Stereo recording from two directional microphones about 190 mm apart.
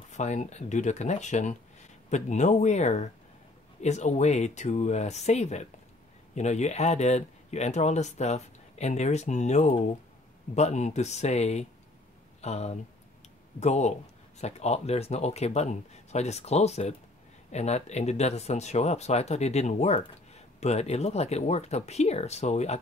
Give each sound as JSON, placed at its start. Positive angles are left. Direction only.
{"t": 0.1, "sound": "speech", "side_deg": 40}